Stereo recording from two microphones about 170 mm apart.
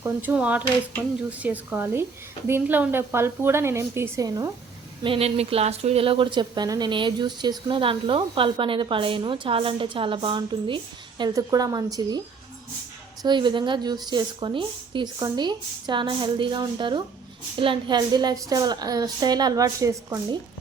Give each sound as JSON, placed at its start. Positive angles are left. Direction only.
{"t": 0.0, "sound": "a woman's voice", "side_deg": -10}
{"t": 5.0, "sound": "a woman's voice", "side_deg": -35}
{"t": 13.2, "sound": "a woman's voice", "side_deg": -25}